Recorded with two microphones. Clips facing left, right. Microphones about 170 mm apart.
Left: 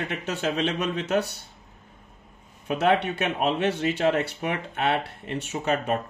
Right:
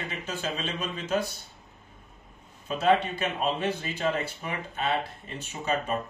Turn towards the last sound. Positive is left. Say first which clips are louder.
# left 4 dB
turn(degrees=65)  # may be behind; listen again after turning